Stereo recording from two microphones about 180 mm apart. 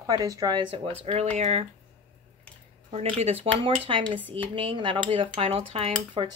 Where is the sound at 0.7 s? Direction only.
35° right (ahead or behind).